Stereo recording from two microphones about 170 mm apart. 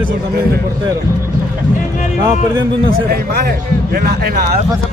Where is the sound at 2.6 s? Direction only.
65° right (ahead or behind).